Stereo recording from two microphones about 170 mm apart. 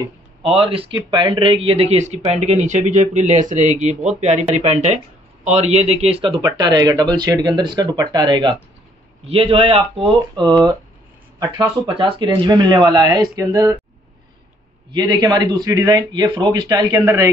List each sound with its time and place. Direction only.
0.4 s a man's voice: 30° right (ahead or behind)
14.9 s a man's voice: 25° right (ahead or behind)